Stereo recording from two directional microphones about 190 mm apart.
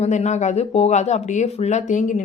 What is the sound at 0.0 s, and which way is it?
Speech, 35° left (ahead or behind).